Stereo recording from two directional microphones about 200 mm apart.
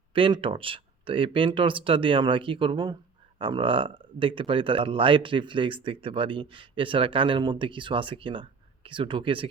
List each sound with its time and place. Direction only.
0.1 s speech: 25° right (ahead or behind)